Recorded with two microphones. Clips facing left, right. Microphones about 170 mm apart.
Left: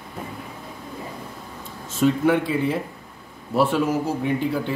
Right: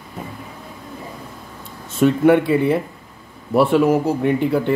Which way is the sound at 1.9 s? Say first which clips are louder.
Right 5 dB; 60° right (ahead or behind).